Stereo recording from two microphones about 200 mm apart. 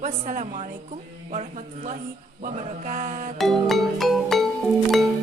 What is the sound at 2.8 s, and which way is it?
Speech, 40° right (ahead or behind).